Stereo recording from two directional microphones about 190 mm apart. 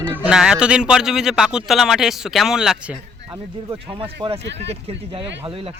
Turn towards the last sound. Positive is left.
turn(degrees=-30)  # may be behind; listen again after turning